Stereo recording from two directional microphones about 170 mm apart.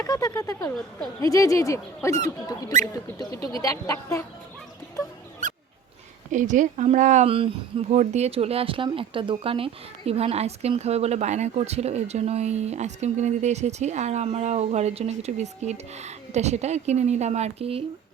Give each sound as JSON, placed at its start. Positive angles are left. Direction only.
{"t": 0.0, "sound": "speech", "side_deg": 20}
{"t": 6.3, "sound": "speech", "side_deg": -50}